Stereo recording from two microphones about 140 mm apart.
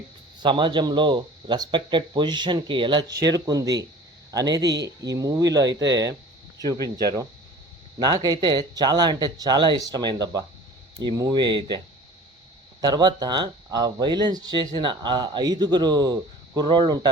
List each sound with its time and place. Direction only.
0.4 s speech: 35° right (ahead or behind)
6.6 s speech: 25° left (ahead or behind)
6.8 s speech: 25° right (ahead or behind)
12.8 s speech: 30° right (ahead or behind)